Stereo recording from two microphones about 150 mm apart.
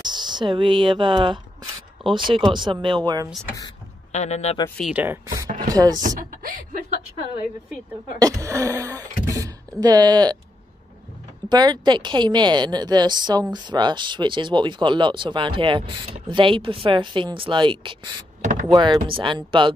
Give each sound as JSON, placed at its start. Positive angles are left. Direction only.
{"t": 0.0, "sound": "speech", "side_deg": -30}
{"t": 4.1, "sound": "a man's voice", "side_deg": 50}
{"t": 4.9, "sound": "speech", "side_deg": -15}
{"t": 5.6, "sound": "chopping", "side_deg": -25}
{"t": 5.9, "sound": "a sound", "side_deg": -60}
{"t": 8.2, "sound": "speech", "side_deg": -20}
{"t": 11.4, "sound": "a woman's voice", "side_deg": -30}
{"t": 18.4, "sound": "a sound", "side_deg": -55}
{"t": 18.7, "sound": "a woman's voice", "side_deg": -35}